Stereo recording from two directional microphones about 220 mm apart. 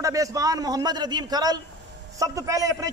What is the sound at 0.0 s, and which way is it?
A man's voice, 15° right (ahead or behind).